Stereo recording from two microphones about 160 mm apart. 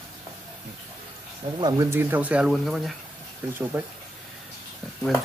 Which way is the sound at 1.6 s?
25° right (ahead or behind).